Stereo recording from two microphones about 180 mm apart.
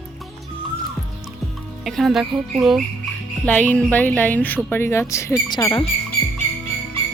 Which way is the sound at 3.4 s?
10° left (ahead or behind).